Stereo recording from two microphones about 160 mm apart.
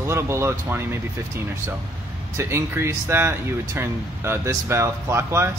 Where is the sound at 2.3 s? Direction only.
15° right (ahead or behind).